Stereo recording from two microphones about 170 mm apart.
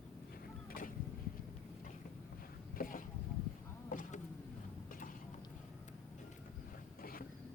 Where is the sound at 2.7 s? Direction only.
55° left (ahead or behind).